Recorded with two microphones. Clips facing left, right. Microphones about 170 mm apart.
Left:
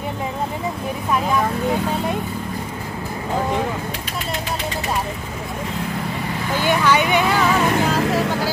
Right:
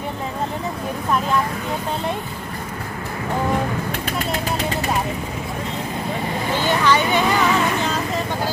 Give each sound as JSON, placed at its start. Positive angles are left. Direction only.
{"t": 6.6, "sound": "speech", "side_deg": 10}
{"t": 8.0, "sound": "vehicle", "side_deg": 85}